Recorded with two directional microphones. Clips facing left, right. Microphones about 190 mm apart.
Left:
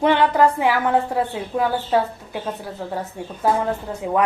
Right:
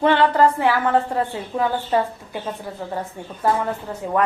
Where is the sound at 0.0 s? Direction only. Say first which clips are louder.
Even; 15° left (ahead or behind).